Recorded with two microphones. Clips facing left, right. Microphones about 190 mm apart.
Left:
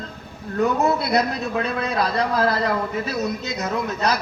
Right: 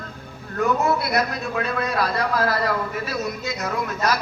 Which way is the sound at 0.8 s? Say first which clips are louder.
Left 2 dB; 25° left (ahead or behind).